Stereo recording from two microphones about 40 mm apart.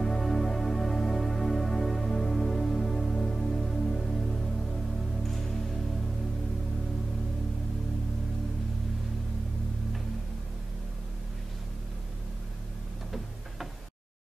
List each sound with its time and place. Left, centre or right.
0.0 s music: centre